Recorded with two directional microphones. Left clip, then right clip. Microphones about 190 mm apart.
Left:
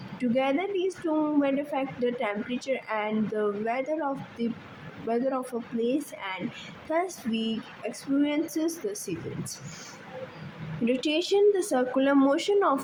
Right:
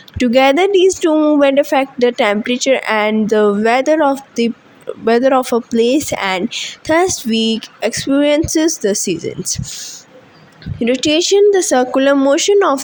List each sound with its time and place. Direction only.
0.2 s speech: 45° right (ahead or behind)
10.8 s speech: 30° right (ahead or behind)